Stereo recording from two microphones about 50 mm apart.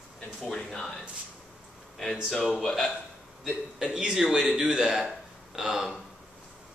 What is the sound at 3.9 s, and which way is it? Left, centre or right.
Speech, centre.